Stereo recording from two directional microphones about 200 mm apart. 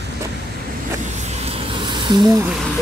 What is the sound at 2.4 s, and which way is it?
Speech, 5° right (ahead or behind).